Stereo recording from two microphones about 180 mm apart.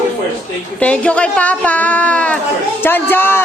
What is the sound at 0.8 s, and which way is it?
A woman's voice, 5° left (ahead or behind).